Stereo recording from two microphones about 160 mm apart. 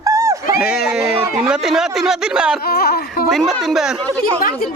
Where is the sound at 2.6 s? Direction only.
75° left (ahead or behind).